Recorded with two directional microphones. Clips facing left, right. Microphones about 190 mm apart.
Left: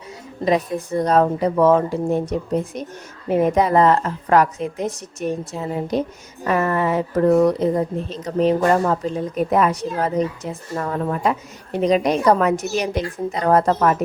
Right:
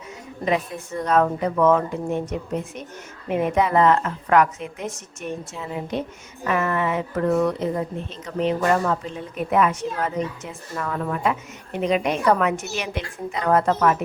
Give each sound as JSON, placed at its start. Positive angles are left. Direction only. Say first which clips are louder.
{"t": 0.4, "sound": "a woman's voice", "louder": "left 4 dB", "side_deg": 35}